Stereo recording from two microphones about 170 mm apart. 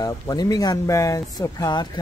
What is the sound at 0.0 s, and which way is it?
Speech, 20° left (ahead or behind).